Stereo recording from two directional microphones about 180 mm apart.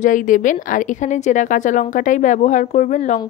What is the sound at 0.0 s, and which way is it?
A woman's voice, 45° left (ahead or behind).